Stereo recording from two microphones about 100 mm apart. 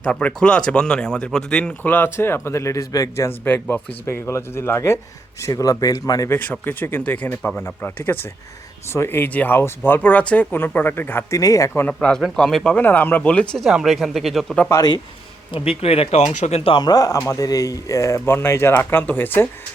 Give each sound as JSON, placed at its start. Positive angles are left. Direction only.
{"t": 0.0, "sound": "speech", "side_deg": 10}
{"t": 1.8, "sound": "speech", "side_deg": 20}
{"t": 3.2, "sound": "a man's voice", "side_deg": 20}
{"t": 6.2, "sound": "speech", "side_deg": 20}
{"t": 11.3, "sound": "a man's voice", "side_deg": 35}
{"t": 11.7, "sound": "speech", "side_deg": 20}
{"t": 11.9, "sound": "speech", "side_deg": 5}
{"t": 12.7, "sound": "speech", "side_deg": 20}
{"t": 13.7, "sound": "speech", "side_deg": 0}
{"t": 14.7, "sound": "a man's voice", "side_deg": 40}
{"t": 15.5, "sound": "speech", "side_deg": 70}
{"t": 16.7, "sound": "a man's voice", "side_deg": 40}